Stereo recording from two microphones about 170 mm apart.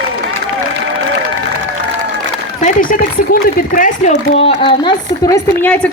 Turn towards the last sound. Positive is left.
turn(degrees=5)  # may be behind; listen again after turning